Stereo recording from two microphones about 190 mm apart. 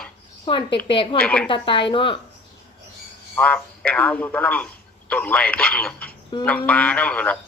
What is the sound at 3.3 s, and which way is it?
Speech, 5° left (ahead or behind).